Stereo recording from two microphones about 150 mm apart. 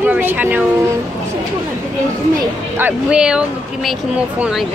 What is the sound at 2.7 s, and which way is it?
Speech, 10° right (ahead or behind).